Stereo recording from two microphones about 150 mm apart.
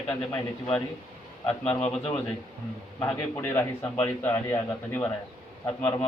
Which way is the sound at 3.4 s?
15° left (ahead or behind).